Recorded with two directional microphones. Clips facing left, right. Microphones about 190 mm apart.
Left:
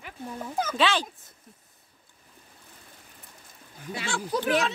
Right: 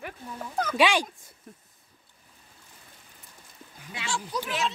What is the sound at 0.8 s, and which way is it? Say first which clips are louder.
Speech: right 3 dB; 15° right (ahead or behind).